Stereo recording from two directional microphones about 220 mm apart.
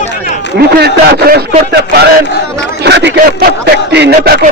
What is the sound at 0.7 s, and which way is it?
Speech, 45° right (ahead or behind).